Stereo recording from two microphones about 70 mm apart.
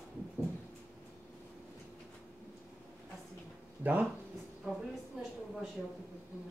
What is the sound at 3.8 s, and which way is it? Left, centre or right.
Speech, right.